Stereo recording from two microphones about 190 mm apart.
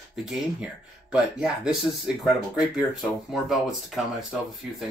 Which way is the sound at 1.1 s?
5° right (ahead or behind).